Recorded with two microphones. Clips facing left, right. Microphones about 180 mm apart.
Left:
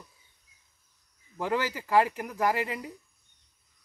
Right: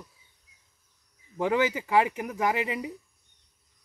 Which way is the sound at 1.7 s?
15° right (ahead or behind).